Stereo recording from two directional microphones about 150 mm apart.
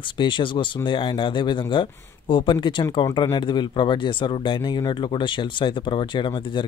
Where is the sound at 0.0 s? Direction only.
35° left (ahead or behind).